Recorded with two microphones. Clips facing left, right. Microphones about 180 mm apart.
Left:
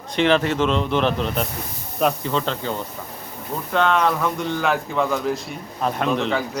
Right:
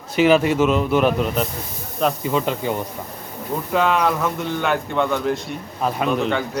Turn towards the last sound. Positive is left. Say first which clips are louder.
# right 1 dB
turn(degrees=0)  # may be behind; listen again after turning